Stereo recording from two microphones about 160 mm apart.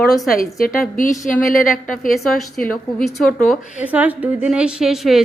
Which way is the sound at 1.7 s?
60° left (ahead or behind).